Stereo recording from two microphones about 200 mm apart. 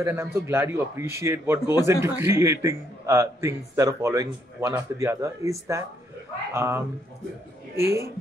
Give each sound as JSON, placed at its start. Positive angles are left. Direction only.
{"t": 0.0, "sound": "a man's voice", "side_deg": -15}
{"t": 7.8, "sound": "a man's voice", "side_deg": -15}